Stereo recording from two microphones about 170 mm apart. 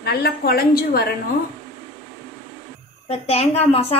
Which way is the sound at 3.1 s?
35° left (ahead or behind).